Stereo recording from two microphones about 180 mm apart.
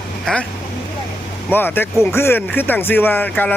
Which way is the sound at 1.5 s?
10° left (ahead or behind).